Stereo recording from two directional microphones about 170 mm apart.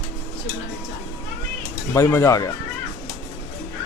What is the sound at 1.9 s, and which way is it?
Speech, 15° left (ahead or behind).